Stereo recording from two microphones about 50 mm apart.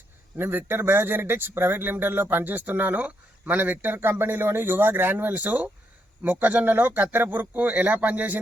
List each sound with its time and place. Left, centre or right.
0.3 s a man's voice: right